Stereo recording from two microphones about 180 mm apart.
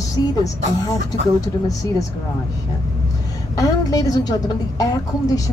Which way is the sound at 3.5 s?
20° left (ahead or behind).